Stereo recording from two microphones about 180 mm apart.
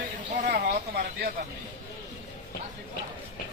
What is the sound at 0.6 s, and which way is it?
Speech, 55° right (ahead or behind).